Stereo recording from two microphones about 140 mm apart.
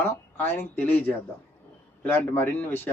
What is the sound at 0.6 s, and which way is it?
Speech, 15° left (ahead or behind).